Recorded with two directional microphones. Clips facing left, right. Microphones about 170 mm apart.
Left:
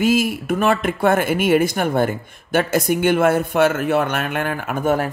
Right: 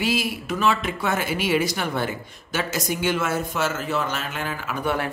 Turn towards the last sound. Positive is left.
turn(degrees=45)  # may be behind; listen again after turning